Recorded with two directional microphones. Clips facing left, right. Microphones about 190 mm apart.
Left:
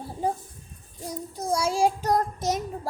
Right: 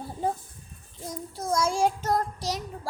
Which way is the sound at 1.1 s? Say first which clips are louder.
Left 2 dB; 15° left (ahead or behind).